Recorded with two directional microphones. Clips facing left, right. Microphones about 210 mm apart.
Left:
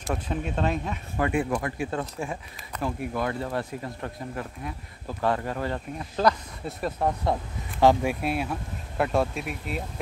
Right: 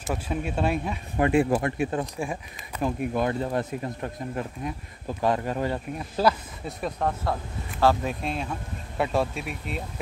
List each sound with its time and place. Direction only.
0.0 s speech: 5° right (ahead or behind)
1.2 s speech: 25° right (ahead or behind); by 6.3 s 10° right (ahead or behind)
6.8 s speech: 10° left (ahead or behind)